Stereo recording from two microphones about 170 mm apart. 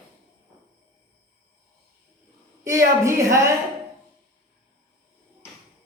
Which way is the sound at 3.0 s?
15° right (ahead or behind).